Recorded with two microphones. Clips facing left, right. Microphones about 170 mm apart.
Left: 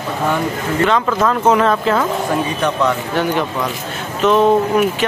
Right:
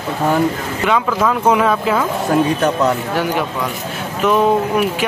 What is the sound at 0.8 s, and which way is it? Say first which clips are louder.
Speech: right 1 dB; 10° right (ahead or behind).